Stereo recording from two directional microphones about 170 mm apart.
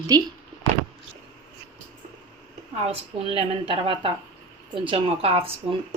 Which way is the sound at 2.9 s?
35° right (ahead or behind).